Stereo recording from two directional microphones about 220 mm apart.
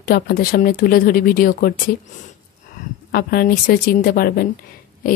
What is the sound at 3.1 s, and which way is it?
Speech, 40° left (ahead or behind).